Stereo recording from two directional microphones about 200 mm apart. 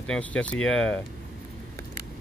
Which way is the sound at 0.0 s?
5° left (ahead or behind).